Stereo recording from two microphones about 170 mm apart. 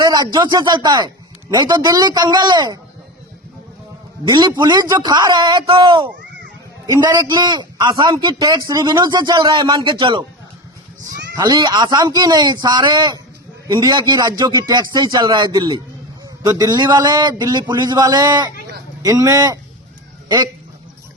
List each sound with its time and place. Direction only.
0.0 s a man's voice: 25° right (ahead or behind)
4.3 s a man's voice: 25° right (ahead or behind)
11.3 s a man's voice: 25° right (ahead or behind)